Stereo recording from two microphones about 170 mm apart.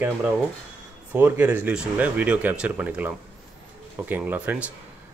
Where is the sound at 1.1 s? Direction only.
10° right (ahead or behind).